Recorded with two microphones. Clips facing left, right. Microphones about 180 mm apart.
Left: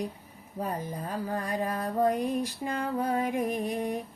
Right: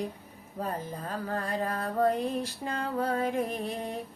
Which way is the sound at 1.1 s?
15° left (ahead or behind).